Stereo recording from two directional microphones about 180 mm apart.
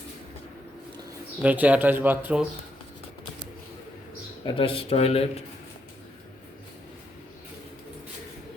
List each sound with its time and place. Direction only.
1.4 s speech: 5° right (ahead or behind)
4.4 s speech: 30° left (ahead or behind)